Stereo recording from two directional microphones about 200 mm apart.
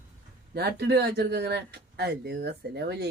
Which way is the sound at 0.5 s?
55° right (ahead or behind).